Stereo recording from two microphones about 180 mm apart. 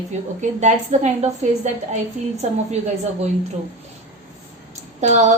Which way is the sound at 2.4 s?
40° right (ahead or behind).